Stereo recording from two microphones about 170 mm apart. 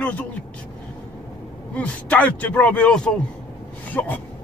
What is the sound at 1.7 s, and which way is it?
Speech, 10° left (ahead or behind).